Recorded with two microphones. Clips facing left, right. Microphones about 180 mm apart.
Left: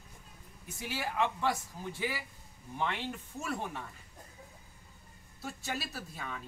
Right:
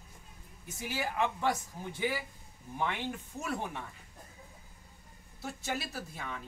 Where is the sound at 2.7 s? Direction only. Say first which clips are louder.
Right 1 dB; 15° right (ahead or behind).